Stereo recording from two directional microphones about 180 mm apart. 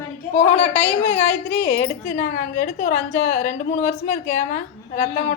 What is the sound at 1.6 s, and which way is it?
A woman's voice, 50° left (ahead or behind).